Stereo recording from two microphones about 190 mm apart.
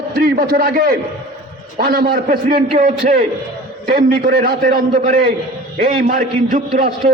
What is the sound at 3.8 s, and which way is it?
Speech, 50° right (ahead or behind).